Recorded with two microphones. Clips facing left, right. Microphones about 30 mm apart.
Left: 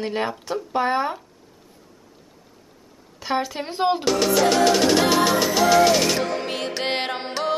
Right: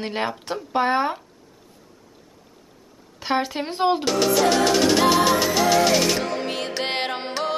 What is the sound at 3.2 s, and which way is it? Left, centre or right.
Speech, centre.